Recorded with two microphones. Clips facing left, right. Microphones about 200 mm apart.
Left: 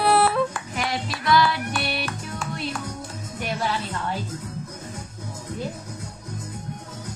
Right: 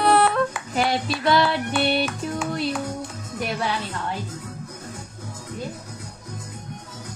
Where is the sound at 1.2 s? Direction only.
25° right (ahead or behind).